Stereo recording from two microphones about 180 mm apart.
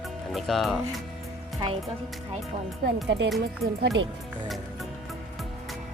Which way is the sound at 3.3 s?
65° right (ahead or behind).